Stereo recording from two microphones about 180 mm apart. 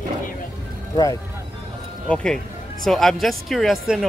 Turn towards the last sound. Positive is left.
turn(degrees=0)  # may be behind; listen again after turning